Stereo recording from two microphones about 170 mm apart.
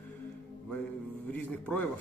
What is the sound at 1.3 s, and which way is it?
Speech, 10° left (ahead or behind).